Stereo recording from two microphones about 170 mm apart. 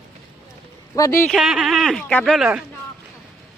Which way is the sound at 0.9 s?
20° left (ahead or behind).